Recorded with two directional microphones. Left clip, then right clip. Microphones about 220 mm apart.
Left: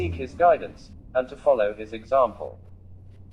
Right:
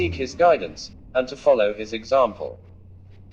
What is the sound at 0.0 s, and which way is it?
Speech, 50° right (ahead or behind).